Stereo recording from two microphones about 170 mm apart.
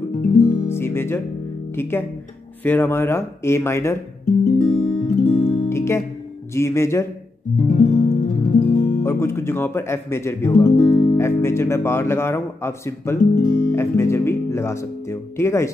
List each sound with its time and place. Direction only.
0.5 s music: 15° left (ahead or behind)
1.8 s speech: 15° left (ahead or behind)
4.5 s guitar: 40° left (ahead or behind)
5.7 s music: 15° left (ahead or behind)
6.5 s speech: 15° left (ahead or behind)
7.6 s music: 45° left (ahead or behind)
9.0 s speech: 15° left (ahead or behind)
10.9 s guitar: 30° left (ahead or behind)
11.1 s speech: 15° left (ahead or behind)